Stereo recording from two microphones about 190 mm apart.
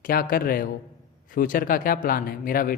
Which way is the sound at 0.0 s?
50° left (ahead or behind).